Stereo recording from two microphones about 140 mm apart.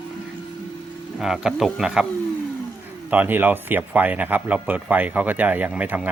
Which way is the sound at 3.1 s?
10° right (ahead or behind).